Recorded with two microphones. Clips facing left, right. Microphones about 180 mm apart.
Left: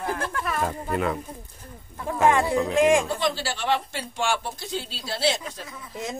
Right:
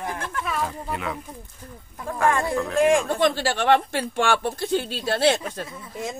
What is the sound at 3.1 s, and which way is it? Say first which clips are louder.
A woman's voice: right 5 dB; 55° right (ahead or behind).